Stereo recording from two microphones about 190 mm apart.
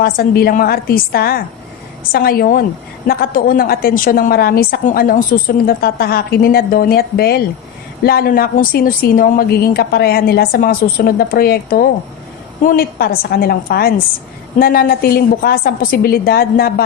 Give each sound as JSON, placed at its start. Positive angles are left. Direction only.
{"t": 0.0, "sound": "a woman's voice", "side_deg": 55}